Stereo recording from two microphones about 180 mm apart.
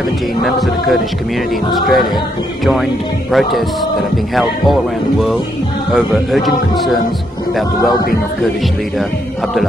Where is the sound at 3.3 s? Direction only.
Centre (ahead or behind).